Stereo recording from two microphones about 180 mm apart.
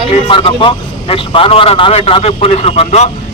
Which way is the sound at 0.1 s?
30° left (ahead or behind).